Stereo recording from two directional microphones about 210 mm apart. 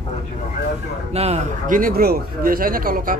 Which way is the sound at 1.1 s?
30° right (ahead or behind).